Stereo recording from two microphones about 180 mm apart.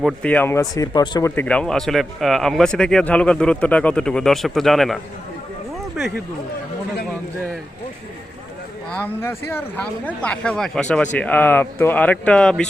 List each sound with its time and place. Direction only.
0.0 s speech: 5° left (ahead or behind); by 1.3 s 20° left (ahead or behind)
1.4 s speech: 5° left (ahead or behind)
8.9 s speech: 10° left (ahead or behind)